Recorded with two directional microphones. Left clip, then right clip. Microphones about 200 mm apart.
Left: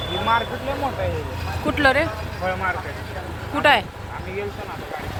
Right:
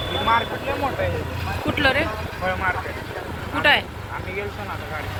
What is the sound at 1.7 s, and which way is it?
Speech, 30° left (ahead or behind).